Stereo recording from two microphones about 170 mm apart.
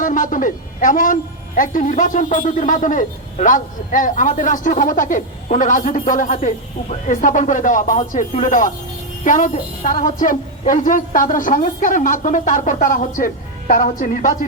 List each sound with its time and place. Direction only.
0.0 s a woman's voice: 50° left (ahead or behind)